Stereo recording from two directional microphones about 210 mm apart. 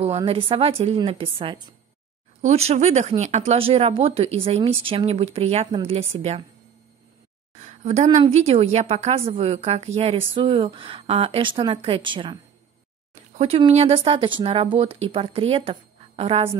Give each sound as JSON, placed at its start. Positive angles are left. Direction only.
{"t": 0.0, "sound": "a woman's voice", "side_deg": -25}
{"t": 7.5, "sound": "a woman's voice", "side_deg": -35}
{"t": 13.4, "sound": "a woman's voice", "side_deg": -30}